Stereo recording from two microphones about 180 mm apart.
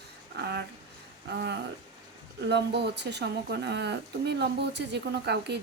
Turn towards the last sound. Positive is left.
turn(degrees=-70)  # may be behind; listen again after turning